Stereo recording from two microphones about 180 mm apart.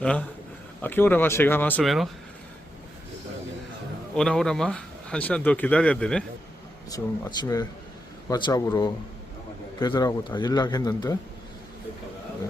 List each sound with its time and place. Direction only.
0.0 s speech: 5° left (ahead or behind)
1.8 s speech: centre (ahead or behind)
4.1 s speech: 5° left (ahead or behind)
6.9 s a man's voice: 20° left (ahead or behind)